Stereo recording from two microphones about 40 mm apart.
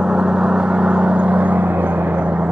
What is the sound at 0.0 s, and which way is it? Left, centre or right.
Vehicle, centre.